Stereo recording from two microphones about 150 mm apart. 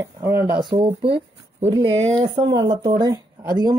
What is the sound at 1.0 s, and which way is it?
Speech, 35° right (ahead or behind).